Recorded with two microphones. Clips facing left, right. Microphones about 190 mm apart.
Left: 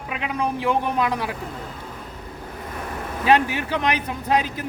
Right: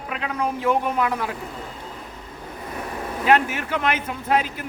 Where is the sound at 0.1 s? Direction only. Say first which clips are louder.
Left 1 dB; 15° left (ahead or behind).